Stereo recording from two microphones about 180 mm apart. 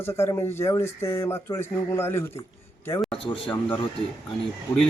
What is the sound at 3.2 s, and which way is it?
Speech, 30° left (ahead or behind).